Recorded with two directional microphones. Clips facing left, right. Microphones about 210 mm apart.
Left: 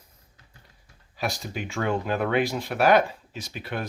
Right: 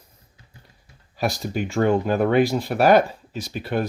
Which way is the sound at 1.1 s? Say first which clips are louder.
Right 6 dB; 40° right (ahead or behind).